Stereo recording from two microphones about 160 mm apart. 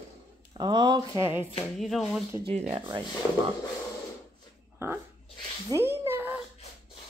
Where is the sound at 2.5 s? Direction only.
45° right (ahead or behind).